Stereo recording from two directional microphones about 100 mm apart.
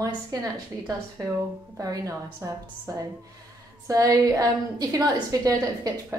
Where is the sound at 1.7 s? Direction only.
35° right (ahead or behind).